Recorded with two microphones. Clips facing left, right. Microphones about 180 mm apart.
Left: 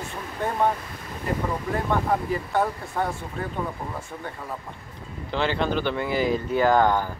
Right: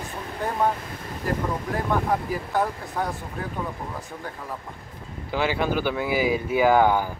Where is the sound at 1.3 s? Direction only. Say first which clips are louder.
Even; centre (ahead or behind).